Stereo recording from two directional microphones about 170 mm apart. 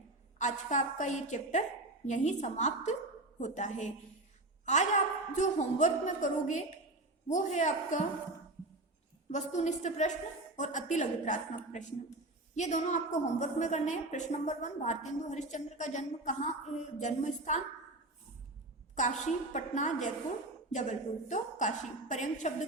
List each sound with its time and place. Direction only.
0.3 s a woman's voice: 45° left (ahead or behind)
9.3 s a woman's voice: 45° left (ahead or behind)
18.9 s a woman's voice: 45° left (ahead or behind)